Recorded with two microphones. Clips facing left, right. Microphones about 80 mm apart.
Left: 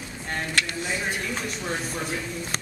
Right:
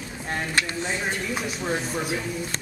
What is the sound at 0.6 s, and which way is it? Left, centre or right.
Speech, right.